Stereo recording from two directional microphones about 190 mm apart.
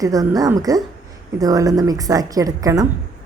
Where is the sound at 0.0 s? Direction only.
20° right (ahead or behind).